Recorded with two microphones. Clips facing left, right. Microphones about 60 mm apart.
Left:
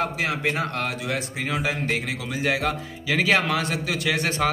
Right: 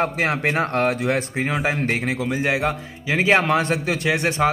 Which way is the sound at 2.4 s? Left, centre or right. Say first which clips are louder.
Left 1 dB; right.